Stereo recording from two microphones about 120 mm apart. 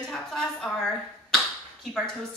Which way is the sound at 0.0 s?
5° left (ahead or behind).